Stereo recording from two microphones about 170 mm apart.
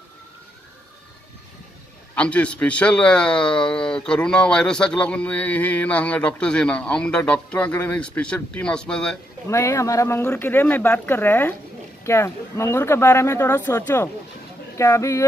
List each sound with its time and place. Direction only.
2.1 s a man's voice: 5° left (ahead or behind)
9.5 s a man's voice: 15° left (ahead or behind)